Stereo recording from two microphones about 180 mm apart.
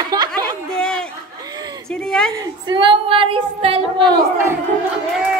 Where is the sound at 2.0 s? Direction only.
5° left (ahead or behind).